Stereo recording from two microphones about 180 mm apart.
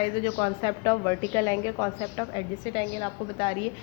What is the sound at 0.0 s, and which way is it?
A woman's voice, 30° left (ahead or behind).